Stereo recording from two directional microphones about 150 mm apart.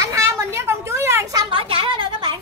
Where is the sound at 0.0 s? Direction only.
20° right (ahead or behind).